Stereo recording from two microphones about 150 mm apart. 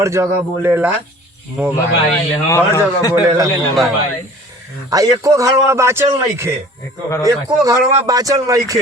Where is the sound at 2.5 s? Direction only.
20° left (ahead or behind).